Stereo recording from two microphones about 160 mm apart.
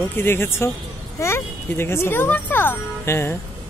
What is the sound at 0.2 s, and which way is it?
Speech, 15° left (ahead or behind).